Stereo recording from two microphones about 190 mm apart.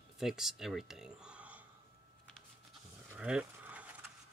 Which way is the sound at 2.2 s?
Centre (ahead or behind).